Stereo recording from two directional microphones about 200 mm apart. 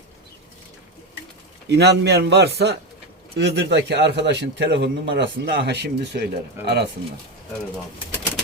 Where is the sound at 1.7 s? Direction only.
55° right (ahead or behind).